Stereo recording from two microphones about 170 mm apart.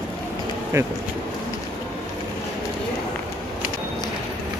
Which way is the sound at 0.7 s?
15° right (ahead or behind).